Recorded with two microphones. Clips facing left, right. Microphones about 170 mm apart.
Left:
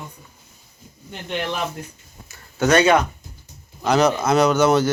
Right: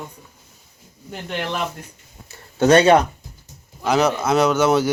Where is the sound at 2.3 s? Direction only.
30° right (ahead or behind).